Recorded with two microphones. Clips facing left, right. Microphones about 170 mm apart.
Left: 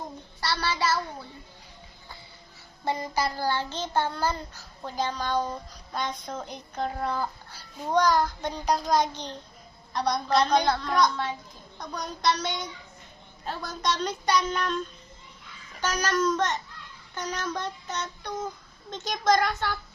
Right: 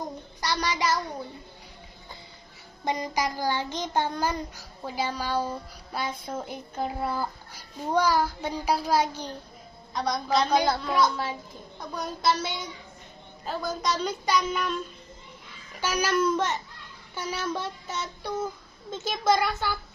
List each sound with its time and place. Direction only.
0.4 s a child's voice: 15° right (ahead or behind)
2.8 s child singing: 15° right (ahead or behind)
9.9 s speech: centre (ahead or behind)
15.8 s child singing: 10° right (ahead or behind)
17.2 s speech: 5° right (ahead or behind)